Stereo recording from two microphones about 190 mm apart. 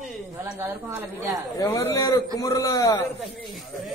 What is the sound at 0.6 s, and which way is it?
Speech, 15° right (ahead or behind).